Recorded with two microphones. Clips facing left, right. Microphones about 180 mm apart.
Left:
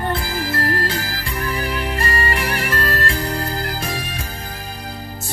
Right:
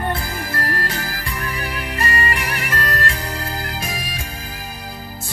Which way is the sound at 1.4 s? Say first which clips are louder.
Left 6 dB; 30° left (ahead or behind).